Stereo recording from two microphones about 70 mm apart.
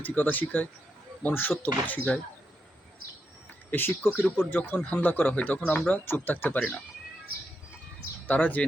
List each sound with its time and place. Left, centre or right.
0.0 s speech: left
3.7 s speech: left
8.3 s speech: left